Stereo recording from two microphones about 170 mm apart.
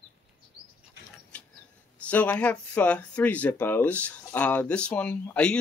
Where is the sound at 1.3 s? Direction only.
5° left (ahead or behind).